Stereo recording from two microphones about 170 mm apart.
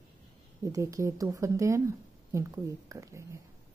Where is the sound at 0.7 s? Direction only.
20° right (ahead or behind).